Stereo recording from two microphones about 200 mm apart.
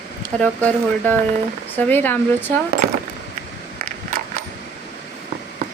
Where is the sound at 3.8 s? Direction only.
45° right (ahead or behind).